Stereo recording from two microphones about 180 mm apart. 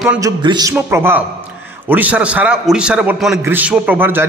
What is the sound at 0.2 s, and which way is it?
Speech, 25° right (ahead or behind).